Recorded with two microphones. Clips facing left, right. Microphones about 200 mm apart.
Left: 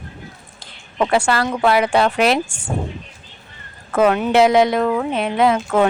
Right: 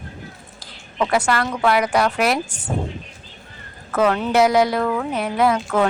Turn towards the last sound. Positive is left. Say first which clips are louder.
# left 2 dB
turn(degrees=20)  # may be behind; listen again after turning